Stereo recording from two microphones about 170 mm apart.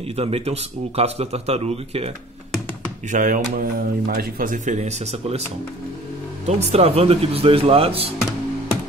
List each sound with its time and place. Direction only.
0.2 s speech: 35° right (ahead or behind)
3.1 s speech: 50° right (ahead or behind); by 8.1 s 35° right (ahead or behind)